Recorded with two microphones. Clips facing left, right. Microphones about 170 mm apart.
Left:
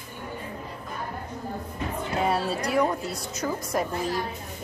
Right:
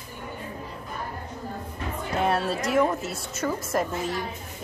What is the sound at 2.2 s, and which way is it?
Speech, centre (ahead or behind).